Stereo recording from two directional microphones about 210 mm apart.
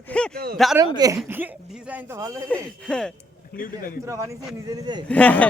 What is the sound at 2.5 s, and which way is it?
Speech, 5° left (ahead or behind).